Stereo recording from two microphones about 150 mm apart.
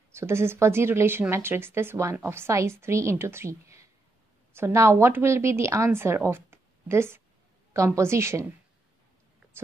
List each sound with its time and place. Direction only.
0.1 s a woman's voice: 15° right (ahead or behind)